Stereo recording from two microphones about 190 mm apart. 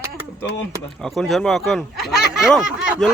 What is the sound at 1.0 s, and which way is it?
Speech, centre (ahead or behind).